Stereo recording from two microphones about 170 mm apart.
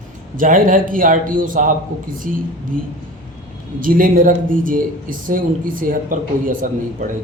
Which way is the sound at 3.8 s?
55° right (ahead or behind).